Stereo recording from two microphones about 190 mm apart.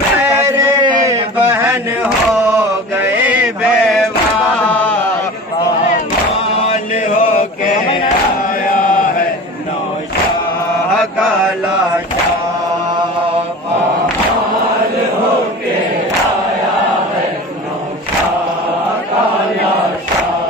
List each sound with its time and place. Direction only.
0.2 s a sound: 20° right (ahead or behind)
3.0 s mantra: 5° right (ahead or behind)
4.6 s music: 10° left (ahead or behind)
6.7 s mantra: 45° left (ahead or behind)
11.0 s mantra: centre (ahead or behind)